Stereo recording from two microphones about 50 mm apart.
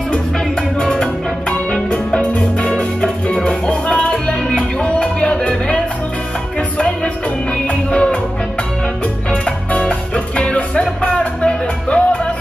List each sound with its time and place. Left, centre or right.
0.7 s music: centre
7.9 s music: left
9.3 s music: left